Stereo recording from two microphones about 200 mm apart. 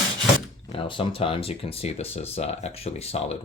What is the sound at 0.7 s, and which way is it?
Speech, 25° left (ahead or behind).